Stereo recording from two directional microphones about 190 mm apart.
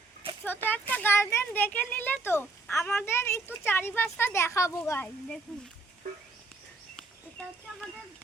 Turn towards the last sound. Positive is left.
turn(degrees=5)  # may be behind; listen again after turning